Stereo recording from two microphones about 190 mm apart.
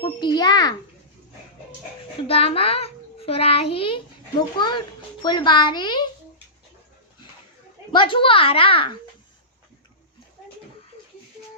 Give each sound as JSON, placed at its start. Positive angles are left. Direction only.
{"t": 0.0, "sound": "a child's voice", "side_deg": 25}
{"t": 2.2, "sound": "a child's voice", "side_deg": 30}
{"t": 7.9, "sound": "a child's voice", "side_deg": 25}